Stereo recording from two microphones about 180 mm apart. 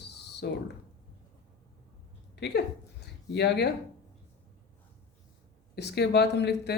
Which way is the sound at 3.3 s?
70° left (ahead or behind).